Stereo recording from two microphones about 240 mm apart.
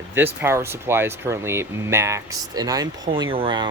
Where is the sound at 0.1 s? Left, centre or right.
Centre.